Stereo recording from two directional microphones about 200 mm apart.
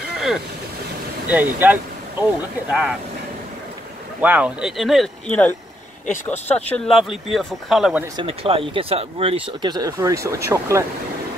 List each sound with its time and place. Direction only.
1.3 s speech: 10° right (ahead or behind)
4.2 s speech: 10° right (ahead or behind)
6.5 s speech: centre (ahead or behind)
8.2 s speech: 25° right (ahead or behind)